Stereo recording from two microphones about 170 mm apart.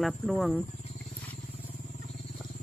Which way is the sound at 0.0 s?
Centre (ahead or behind).